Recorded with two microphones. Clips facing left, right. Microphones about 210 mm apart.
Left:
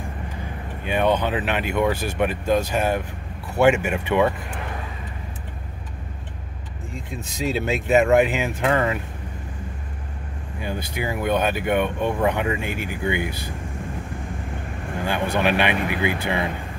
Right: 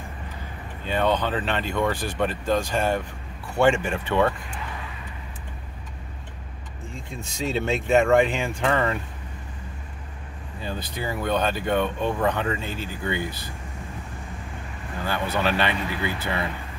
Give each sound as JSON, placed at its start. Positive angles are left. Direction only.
{"t": 0.8, "sound": "speech", "side_deg": 15}
{"t": 6.9, "sound": "speech", "side_deg": 0}
{"t": 10.6, "sound": "speech", "side_deg": 15}
{"t": 15.0, "sound": "speech", "side_deg": 15}